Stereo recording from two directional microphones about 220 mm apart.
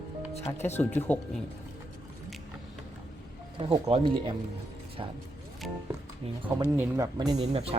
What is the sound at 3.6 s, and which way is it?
Speech, 25° right (ahead or behind).